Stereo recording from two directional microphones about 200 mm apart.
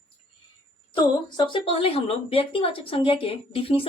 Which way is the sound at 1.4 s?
25° left (ahead or behind).